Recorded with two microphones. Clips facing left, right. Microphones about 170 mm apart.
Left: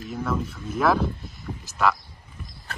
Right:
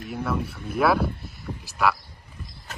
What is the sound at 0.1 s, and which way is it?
Speech, 10° right (ahead or behind).